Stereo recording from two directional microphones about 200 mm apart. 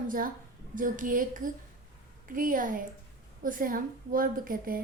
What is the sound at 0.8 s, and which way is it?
A woman's voice, 45° right (ahead or behind).